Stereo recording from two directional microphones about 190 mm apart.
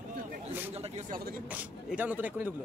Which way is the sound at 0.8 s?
35° right (ahead or behind).